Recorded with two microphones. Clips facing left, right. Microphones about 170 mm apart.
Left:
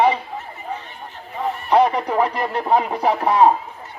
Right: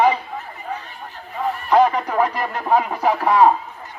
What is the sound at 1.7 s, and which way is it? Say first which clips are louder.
A man's voice: even; 15° left (ahead or behind).